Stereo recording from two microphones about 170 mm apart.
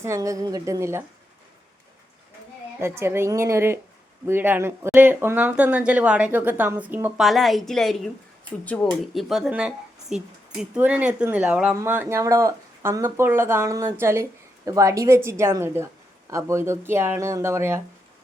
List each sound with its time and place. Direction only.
0.0 s speech: 20° right (ahead or behind)
2.8 s speech: 15° right (ahead or behind)
7.3 s speech: centre (ahead or behind)